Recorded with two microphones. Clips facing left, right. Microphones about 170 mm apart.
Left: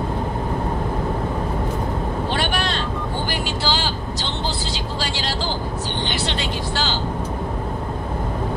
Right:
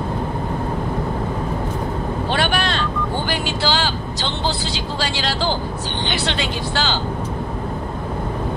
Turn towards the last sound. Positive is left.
turn(degrees=-75)  # may be behind; listen again after turning